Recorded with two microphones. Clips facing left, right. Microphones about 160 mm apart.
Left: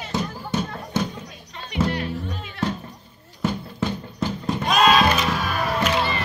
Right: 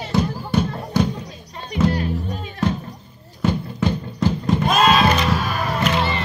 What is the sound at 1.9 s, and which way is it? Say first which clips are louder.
Music: right 4 dB; 35° right (ahead or behind).